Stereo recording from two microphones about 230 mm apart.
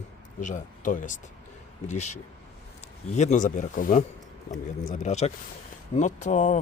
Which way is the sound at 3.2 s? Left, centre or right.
Left.